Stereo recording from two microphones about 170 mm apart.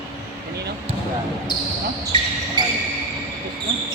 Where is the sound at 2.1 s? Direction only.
30° right (ahead or behind).